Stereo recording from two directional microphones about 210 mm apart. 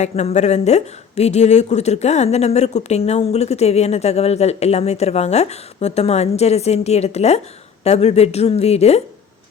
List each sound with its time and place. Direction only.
0.0 s speech: 30° left (ahead or behind)